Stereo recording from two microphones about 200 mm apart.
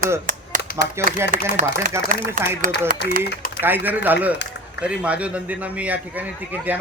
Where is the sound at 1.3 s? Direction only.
45° right (ahead or behind).